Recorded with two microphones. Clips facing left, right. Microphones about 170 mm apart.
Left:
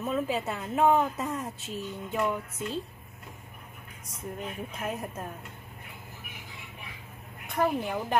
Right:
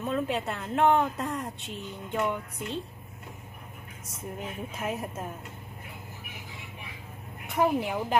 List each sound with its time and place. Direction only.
0.0 s speech: centre (ahead or behind)
4.4 s speech: 5° right (ahead or behind)
7.4 s speech: 10° right (ahead or behind)